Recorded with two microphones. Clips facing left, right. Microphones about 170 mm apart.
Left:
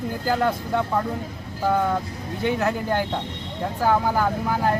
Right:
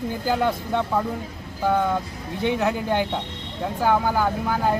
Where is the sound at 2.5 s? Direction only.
Centre (ahead or behind).